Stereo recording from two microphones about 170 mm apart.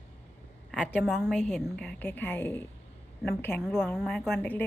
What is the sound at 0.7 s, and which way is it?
A woman's voice, 5° left (ahead or behind).